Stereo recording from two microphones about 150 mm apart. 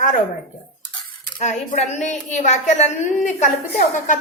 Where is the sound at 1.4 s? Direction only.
50° left (ahead or behind).